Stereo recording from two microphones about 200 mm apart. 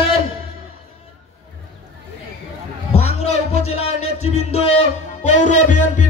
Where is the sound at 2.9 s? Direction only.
35° left (ahead or behind).